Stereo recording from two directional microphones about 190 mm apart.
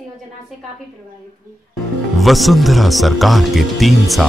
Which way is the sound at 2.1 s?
Centre (ahead or behind).